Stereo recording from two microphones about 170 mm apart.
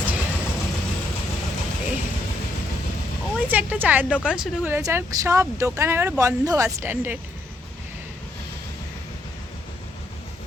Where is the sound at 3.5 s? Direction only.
10° right (ahead or behind).